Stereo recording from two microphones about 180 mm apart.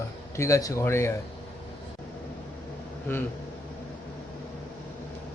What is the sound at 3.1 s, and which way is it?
Speech, 10° left (ahead or behind).